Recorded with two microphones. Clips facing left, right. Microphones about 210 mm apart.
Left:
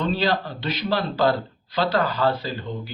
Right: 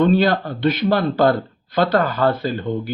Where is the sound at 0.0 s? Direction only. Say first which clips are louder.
Right 7 dB; 50° right (ahead or behind).